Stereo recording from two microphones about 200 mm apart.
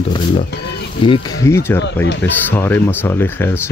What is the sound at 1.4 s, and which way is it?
Speech, 15° left (ahead or behind).